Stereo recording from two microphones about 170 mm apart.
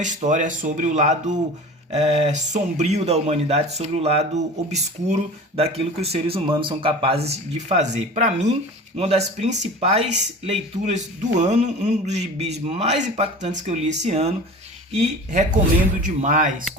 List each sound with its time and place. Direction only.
0.0 s speech: 45° right (ahead or behind)